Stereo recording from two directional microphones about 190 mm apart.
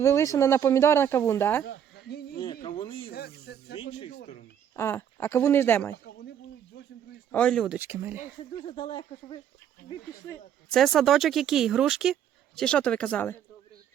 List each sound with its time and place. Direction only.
0.0 s speech: 15° left (ahead or behind)
1.6 s a sound: 60° left (ahead or behind)
2.4 s a sound: 25° left (ahead or behind)
3.1 s speech: 55° left (ahead or behind)
4.8 s speech: 10° left (ahead or behind)
6.1 s a sound: 65° left (ahead or behind)
7.3 s speech: 5° left (ahead or behind)
7.8 s speech: 10° right (ahead or behind)
8.6 s speech: 25° left (ahead or behind)
10.7 s speech: centre (ahead or behind)